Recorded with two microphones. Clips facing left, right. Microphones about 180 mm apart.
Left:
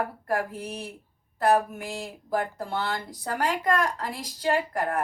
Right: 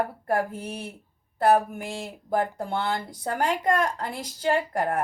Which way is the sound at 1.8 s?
25° right (ahead or behind).